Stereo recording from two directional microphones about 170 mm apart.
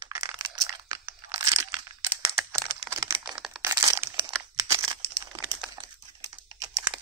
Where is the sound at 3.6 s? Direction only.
15° right (ahead or behind).